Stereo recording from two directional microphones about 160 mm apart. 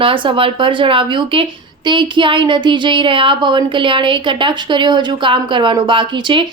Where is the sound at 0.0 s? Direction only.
35° right (ahead or behind).